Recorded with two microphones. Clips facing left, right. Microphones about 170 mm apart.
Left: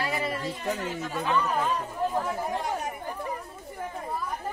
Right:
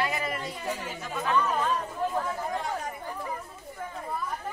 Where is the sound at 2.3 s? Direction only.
20° left (ahead or behind).